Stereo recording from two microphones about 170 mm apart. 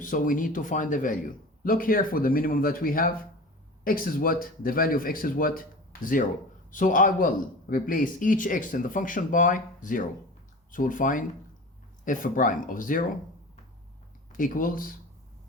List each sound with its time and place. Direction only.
0.0 s a man's voice: 55° left (ahead or behind)
14.3 s speech: 50° left (ahead or behind)